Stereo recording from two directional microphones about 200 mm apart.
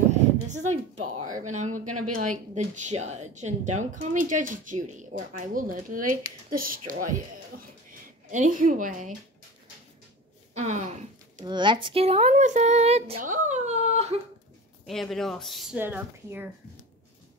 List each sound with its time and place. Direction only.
0.5 s a sound: 35° right (ahead or behind)
1.1 s speech: 40° right (ahead or behind)
10.5 s speech: 35° right (ahead or behind)
11.4 s speech: 25° right (ahead or behind)
14.9 s speech: centre (ahead or behind)